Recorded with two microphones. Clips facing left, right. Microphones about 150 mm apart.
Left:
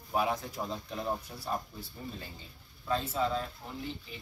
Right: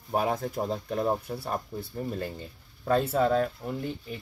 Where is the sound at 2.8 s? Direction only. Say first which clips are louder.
Right 7 dB; 60° right (ahead or behind).